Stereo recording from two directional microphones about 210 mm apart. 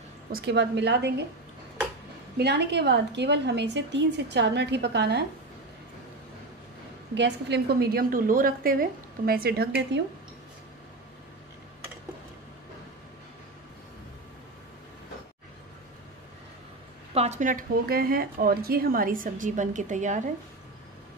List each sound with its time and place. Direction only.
0.3 s a woman's voice: 50° right (ahead or behind)
2.3 s a woman's voice: 50° right (ahead or behind)
7.2 s a woman's voice: 55° right (ahead or behind)
17.1 s speech: 30° right (ahead or behind)